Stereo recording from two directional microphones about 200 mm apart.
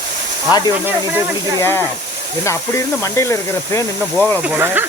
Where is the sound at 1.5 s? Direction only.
10° left (ahead or behind).